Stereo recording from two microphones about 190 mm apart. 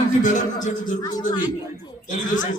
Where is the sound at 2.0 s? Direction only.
45° left (ahead or behind).